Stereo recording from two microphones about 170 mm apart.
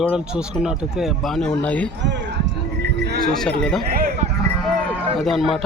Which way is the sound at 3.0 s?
70° right (ahead or behind).